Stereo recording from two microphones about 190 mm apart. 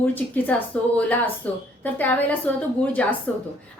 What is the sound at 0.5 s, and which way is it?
A woman's voice, 10° left (ahead or behind).